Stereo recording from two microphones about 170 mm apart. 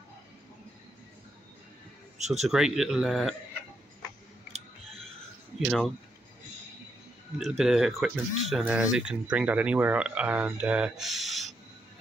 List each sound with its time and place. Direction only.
2.1 s a man's voice: 40° right (ahead or behind)
2.5 s speech: 5° right (ahead or behind)
4.5 s clicking: 40° right (ahead or behind)
5.6 s speech: centre (ahead or behind)
7.3 s speech: centre (ahead or behind)